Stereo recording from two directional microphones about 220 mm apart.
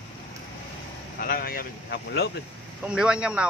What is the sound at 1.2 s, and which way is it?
Speech, 40° left (ahead or behind).